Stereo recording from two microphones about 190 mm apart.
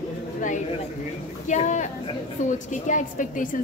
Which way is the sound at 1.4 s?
40° left (ahead or behind).